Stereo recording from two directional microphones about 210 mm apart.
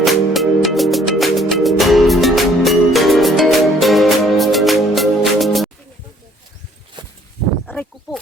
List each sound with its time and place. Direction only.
0.0 s music: centre (ahead or behind)
7.0 s walk: 20° right (ahead or behind)
7.7 s wild animals: 5° left (ahead or behind)